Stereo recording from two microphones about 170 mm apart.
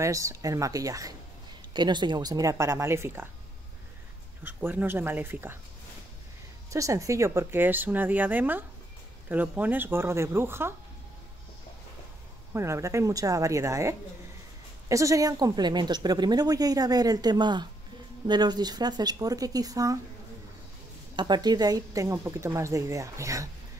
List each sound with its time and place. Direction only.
0.0 s a woman's voice: 20° right (ahead or behind)
4.4 s a woman's voice: 10° right (ahead or behind)
6.7 s a woman's voice: 20° right (ahead or behind)
12.5 s a woman's voice: 15° right (ahead or behind)
21.2 s speech: 25° right (ahead or behind)